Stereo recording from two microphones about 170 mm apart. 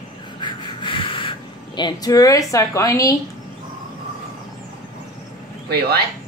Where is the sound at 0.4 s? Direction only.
30° left (ahead or behind).